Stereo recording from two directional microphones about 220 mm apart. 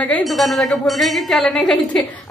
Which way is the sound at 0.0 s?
5° left (ahead or behind).